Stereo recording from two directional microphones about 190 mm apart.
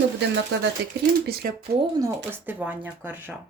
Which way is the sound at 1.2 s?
55° right (ahead or behind).